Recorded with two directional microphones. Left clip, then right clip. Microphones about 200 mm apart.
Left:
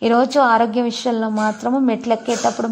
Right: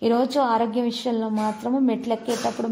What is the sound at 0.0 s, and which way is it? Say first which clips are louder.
A woman's voice: left 6 dB; 15° left (ahead or behind).